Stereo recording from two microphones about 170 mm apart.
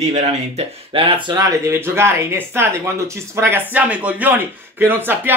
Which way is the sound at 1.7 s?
15° right (ahead or behind).